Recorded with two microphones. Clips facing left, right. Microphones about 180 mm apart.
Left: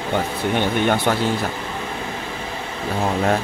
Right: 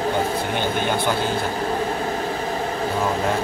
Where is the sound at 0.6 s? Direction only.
65° left (ahead or behind).